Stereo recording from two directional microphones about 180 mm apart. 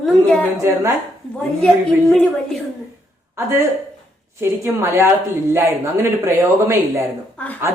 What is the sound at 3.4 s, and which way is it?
Speech, 15° right (ahead or behind).